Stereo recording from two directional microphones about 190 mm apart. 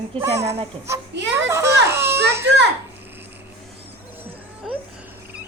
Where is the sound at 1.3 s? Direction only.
15° right (ahead or behind).